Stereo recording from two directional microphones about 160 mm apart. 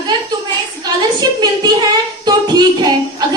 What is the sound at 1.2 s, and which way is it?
Speech, 25° right (ahead or behind).